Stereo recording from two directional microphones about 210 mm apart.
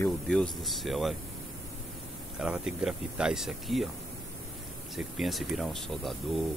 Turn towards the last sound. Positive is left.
turn(degrees=0)  # may be behind; listen again after turning